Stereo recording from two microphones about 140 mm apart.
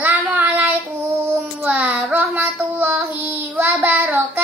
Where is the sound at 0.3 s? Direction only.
10° right (ahead or behind).